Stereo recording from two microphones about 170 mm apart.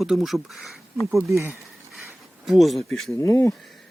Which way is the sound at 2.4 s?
Centre (ahead or behind).